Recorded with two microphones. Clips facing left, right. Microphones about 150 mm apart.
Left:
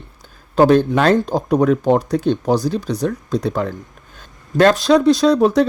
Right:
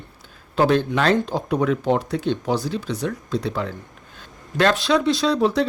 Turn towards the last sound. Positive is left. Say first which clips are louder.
# left 6 dB
turn(degrees=45)  # may be behind; listen again after turning